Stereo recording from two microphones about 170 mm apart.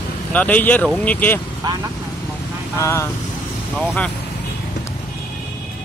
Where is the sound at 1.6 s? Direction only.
20° right (ahead or behind).